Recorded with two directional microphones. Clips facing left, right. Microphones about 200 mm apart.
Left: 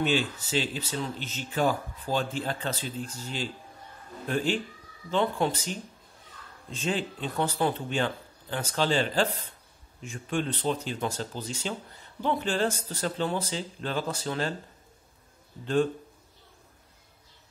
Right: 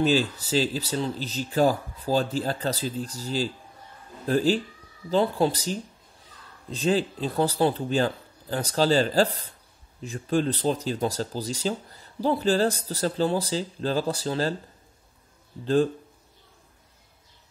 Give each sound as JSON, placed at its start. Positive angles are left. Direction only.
{"t": 0.0, "sound": "speech", "side_deg": -35}
{"t": 15.6, "sound": "speech", "side_deg": -35}